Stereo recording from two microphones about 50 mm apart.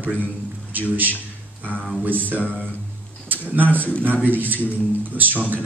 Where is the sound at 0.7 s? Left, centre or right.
Right.